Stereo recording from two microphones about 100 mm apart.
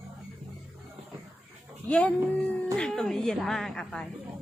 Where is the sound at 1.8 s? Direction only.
15° left (ahead or behind).